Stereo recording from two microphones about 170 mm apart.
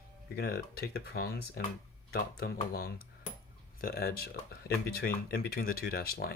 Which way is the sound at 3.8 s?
65° left (ahead or behind).